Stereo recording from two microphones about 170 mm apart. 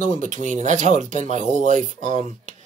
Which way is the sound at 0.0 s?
50° right (ahead or behind).